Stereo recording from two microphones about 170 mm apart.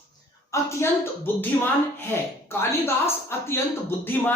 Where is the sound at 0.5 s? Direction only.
20° left (ahead or behind).